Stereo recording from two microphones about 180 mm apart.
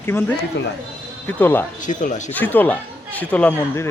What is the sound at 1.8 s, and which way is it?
Speech, 45° left (ahead or behind).